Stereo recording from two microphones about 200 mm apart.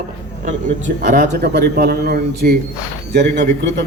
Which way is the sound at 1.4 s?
55° right (ahead or behind).